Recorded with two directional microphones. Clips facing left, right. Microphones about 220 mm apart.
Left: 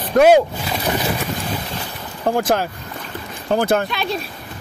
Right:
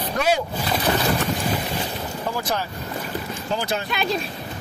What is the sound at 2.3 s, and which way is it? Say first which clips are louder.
Speech: left 8 dB; 50° left (ahead or behind).